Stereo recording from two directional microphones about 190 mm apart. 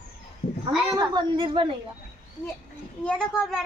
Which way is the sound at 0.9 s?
20° right (ahead or behind).